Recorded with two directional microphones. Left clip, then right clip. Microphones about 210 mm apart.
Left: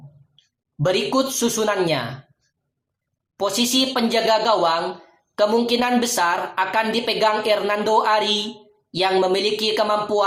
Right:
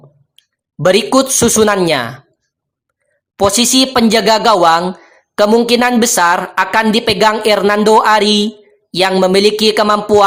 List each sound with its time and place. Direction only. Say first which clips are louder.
0.8 s a woman's voice: right 9 dB; 45° right (ahead or behind)
3.3 s a woman's voice: right 9 dB; 45° right (ahead or behind)